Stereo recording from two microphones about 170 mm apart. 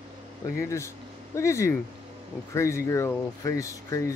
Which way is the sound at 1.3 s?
15° left (ahead or behind).